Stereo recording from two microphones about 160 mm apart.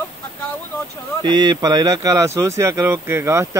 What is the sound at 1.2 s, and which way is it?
Speech, 25° right (ahead or behind).